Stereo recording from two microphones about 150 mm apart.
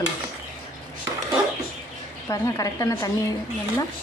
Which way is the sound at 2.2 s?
25° left (ahead or behind).